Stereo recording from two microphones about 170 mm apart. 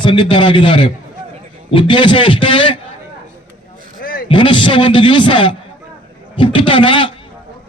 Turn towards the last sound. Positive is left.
turn(degrees=30)  # may be behind; listen again after turning